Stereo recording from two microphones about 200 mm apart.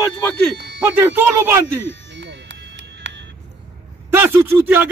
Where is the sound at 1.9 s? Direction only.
60° right (ahead or behind).